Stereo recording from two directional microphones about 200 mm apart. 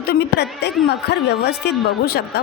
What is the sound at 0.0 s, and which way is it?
A woman's voice, 55° left (ahead or behind).